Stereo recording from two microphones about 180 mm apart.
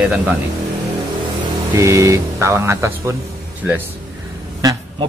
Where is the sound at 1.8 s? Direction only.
15° right (ahead or behind).